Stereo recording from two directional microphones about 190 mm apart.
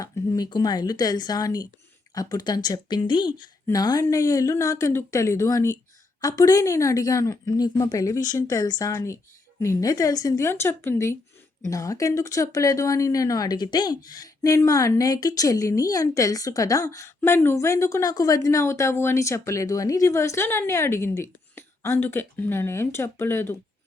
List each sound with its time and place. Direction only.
0.0 s speech: 20° left (ahead or behind)